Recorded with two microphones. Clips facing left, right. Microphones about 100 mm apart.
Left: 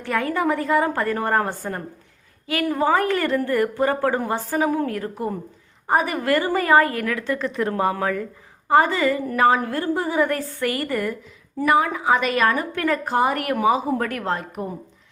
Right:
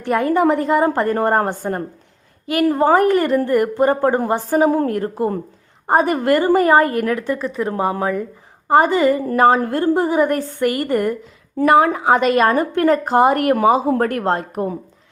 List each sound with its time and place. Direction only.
0.0 s a woman's voice: 20° right (ahead or behind)
2.6 s a woman's voice: 40° right (ahead or behind)
2.9 s a woman's voice: 20° right (ahead or behind)
7.3 s speech: 5° right (ahead or behind)
7.6 s a woman's voice: 20° right (ahead or behind)
9.2 s a woman's voice: 35° right (ahead or behind)
11.8 s a woman's voice: 50° right (ahead or behind)
12.4 s a woman's voice: 35° right (ahead or behind)
13.5 s a woman's voice: 45° right (ahead or behind)